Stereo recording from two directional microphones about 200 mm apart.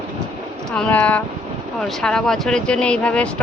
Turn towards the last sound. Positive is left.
turn(degrees=5)  # may be behind; listen again after turning